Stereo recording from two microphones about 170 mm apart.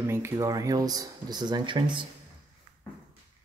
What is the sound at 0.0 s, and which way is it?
Speech, 15° right (ahead or behind).